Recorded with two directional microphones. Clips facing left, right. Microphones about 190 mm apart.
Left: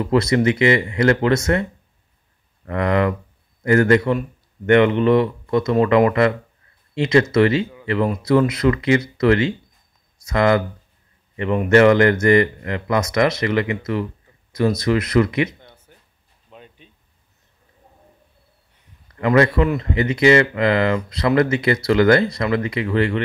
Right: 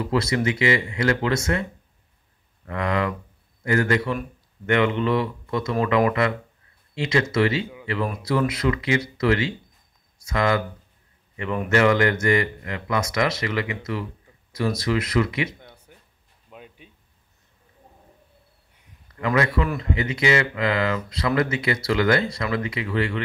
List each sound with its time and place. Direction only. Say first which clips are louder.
0.1 s speech: left 7 dB; 40° left (ahead or behind)
2.6 s speech: left 6 dB; 45° left (ahead or behind)
8.0 s speech: left 7 dB; 25° left (ahead or behind)
8.5 s speech: left 6 dB; 45° left (ahead or behind)
11.3 s speech: left 7 dB; 30° left (ahead or behind); by 15.5 s 45° left (ahead or behind)
15.9 s a sound: right 1 dB; 10° right (ahead or behind)
19.2 s speech: left 6 dB; 40° left (ahead or behind)